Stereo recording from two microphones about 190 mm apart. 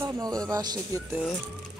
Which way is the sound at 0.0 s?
20° right (ahead or behind).